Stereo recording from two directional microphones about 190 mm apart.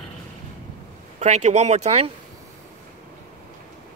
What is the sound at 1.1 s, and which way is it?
Speech, 35° right (ahead or behind).